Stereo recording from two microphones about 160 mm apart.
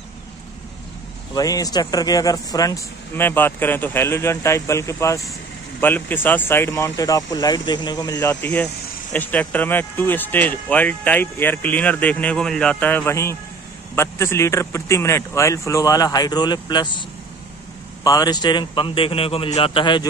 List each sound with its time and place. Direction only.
1.3 s speech: 20° left (ahead or behind)
18.0 s a man's voice: 25° left (ahead or behind)